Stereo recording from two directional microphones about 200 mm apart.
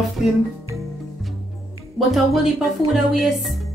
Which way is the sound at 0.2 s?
Centre (ahead or behind).